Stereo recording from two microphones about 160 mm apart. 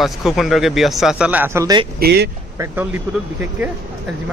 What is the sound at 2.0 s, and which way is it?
Speech, 85° right.